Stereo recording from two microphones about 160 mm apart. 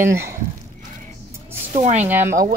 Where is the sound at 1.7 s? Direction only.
45° right (ahead or behind).